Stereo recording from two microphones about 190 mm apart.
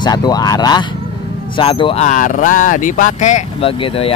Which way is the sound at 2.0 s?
45° left (ahead or behind).